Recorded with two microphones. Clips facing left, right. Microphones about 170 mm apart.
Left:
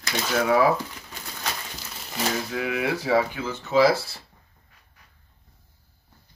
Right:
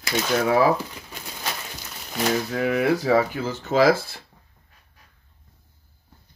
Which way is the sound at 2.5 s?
45° right (ahead or behind).